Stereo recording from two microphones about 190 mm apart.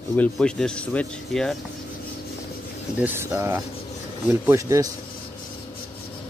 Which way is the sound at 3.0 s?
10° right (ahead or behind).